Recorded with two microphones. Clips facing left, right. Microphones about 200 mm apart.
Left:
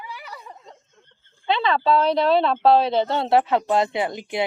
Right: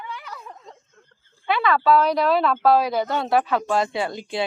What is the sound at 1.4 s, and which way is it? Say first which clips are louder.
Speech: even; 25° left (ahead or behind).